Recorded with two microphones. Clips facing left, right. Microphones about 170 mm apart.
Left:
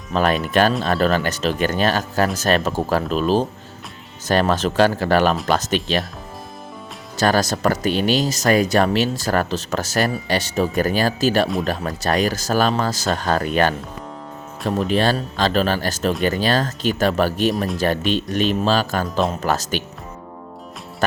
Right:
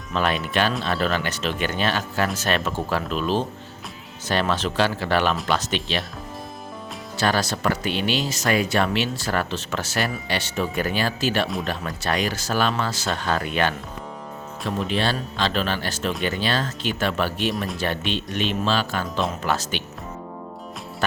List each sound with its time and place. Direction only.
0.1 s speech: 40° left (ahead or behind)
7.2 s speech: 45° left (ahead or behind)
14.8 s speech: 45° left (ahead or behind)